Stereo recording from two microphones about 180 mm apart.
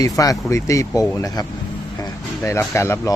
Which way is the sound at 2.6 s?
15° left (ahead or behind).